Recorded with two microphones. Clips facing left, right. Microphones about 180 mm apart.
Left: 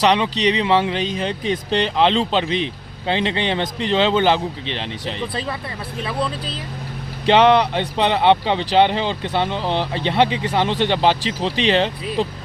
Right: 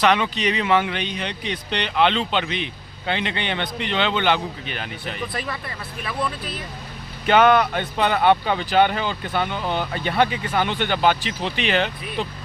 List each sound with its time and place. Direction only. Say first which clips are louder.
0.1 s speech: left 3 dB; 30° left (ahead or behind)